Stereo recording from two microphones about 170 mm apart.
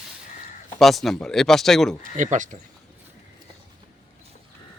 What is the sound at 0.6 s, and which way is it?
Speech, 5° left (ahead or behind).